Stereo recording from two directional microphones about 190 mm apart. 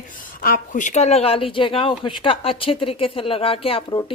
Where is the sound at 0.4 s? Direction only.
45° left (ahead or behind).